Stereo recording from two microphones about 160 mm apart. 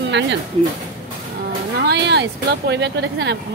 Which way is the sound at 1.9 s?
90° right.